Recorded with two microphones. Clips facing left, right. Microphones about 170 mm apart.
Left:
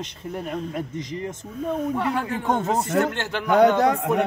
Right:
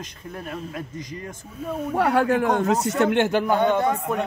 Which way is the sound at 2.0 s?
70° right (ahead or behind).